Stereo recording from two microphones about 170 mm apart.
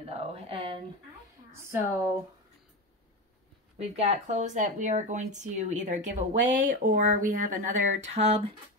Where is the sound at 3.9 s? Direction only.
40° right (ahead or behind).